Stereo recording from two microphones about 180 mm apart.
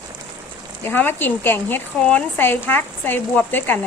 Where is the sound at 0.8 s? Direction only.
10° left (ahead or behind).